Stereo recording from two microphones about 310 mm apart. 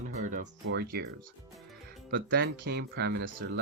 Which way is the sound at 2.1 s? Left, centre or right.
Right.